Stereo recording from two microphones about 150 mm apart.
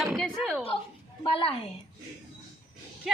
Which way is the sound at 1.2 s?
35° left (ahead or behind).